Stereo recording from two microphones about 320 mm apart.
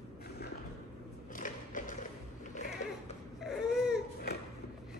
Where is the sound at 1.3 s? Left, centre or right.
Left.